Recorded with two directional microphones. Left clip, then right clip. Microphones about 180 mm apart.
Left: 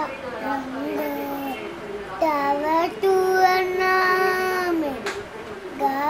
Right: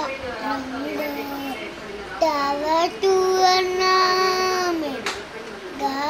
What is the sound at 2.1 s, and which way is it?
Child singing, 20° left (ahead or behind).